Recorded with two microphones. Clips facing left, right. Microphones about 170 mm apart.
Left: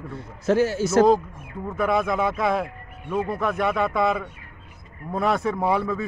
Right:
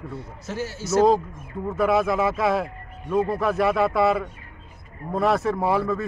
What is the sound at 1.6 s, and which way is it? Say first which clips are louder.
Speech: right 2 dB; centre (ahead or behind).